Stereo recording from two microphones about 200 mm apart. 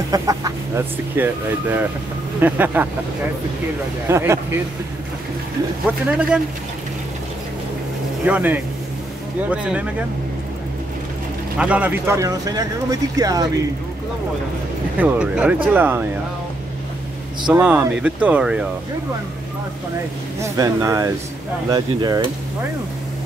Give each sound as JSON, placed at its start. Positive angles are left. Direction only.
{"t": 0.1, "sound": "speech", "side_deg": -20}
{"t": 4.1, "sound": "speech", "side_deg": -10}
{"t": 5.9, "sound": "speech", "side_deg": -5}
{"t": 8.3, "sound": "speech", "side_deg": -10}
{"t": 11.5, "sound": "speech", "side_deg": -5}
{"t": 15.0, "sound": "speech", "side_deg": -5}
{"t": 17.6, "sound": "speech", "side_deg": -5}
{"t": 20.3, "sound": "speech", "side_deg": -15}